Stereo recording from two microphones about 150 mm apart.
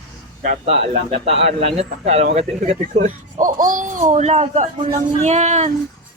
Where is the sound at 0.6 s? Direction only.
45° right (ahead or behind).